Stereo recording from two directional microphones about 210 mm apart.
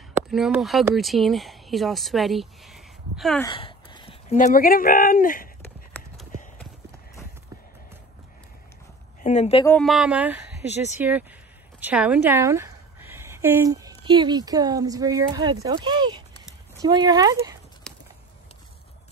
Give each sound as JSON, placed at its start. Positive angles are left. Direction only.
{"t": 0.3, "sound": "speech", "side_deg": 0}
{"t": 3.5, "sound": "speech", "side_deg": 25}
{"t": 9.2, "sound": "speech", "side_deg": 30}
{"t": 9.7, "sound": "a woman's voice", "side_deg": 5}
{"t": 17.9, "sound": "a sound", "side_deg": 5}